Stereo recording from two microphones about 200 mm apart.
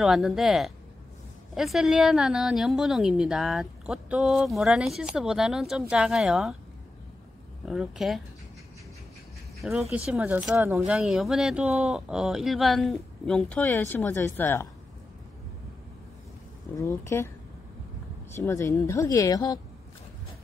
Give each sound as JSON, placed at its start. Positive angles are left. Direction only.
{"t": 0.0, "sound": "a woman's voice", "side_deg": 0}
{"t": 7.6, "sound": "a woman's voice", "side_deg": 0}
{"t": 9.6, "sound": "a woman's voice", "side_deg": 0}
{"t": 17.0, "sound": "speech", "side_deg": 15}
{"t": 18.3, "sound": "speech", "side_deg": 15}